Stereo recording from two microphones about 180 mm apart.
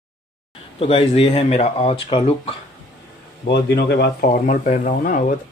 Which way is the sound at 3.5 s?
70° left (ahead or behind).